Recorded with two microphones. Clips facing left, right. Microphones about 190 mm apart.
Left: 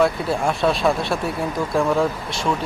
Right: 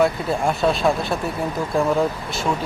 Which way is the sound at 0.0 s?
Centre (ahead or behind).